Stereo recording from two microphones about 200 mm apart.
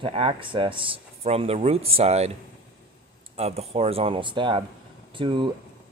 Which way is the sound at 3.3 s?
30° right (ahead or behind).